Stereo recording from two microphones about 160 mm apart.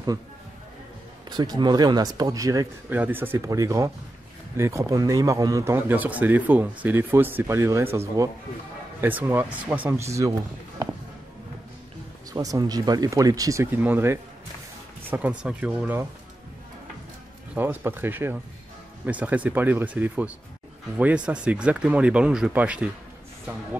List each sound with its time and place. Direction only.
1.3 s speech: 25° right (ahead or behind)
12.3 s speech: 20° right (ahead or behind)
17.6 s speech: 15° right (ahead or behind)